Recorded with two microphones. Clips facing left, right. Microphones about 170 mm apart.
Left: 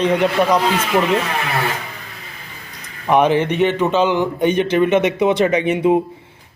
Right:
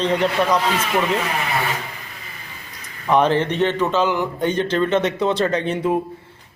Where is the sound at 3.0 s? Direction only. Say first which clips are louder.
Left 2 dB; 15° left (ahead or behind).